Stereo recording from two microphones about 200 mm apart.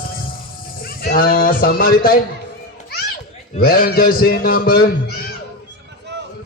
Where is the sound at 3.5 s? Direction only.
50° left (ahead or behind).